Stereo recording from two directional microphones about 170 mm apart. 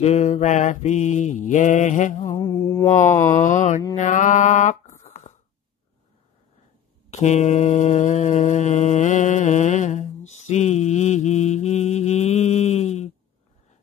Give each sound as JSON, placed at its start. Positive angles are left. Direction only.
{"t": 0.0, "sound": "mantra", "side_deg": 40}
{"t": 2.2, "sound": "mantra", "side_deg": 20}
{"t": 3.3, "sound": "mantra", "side_deg": 45}
{"t": 3.9, "sound": "a sound", "side_deg": 45}
{"t": 7.1, "sound": "mantra", "side_deg": 40}